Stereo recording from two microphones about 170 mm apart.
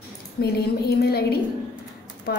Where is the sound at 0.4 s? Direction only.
70° left (ahead or behind).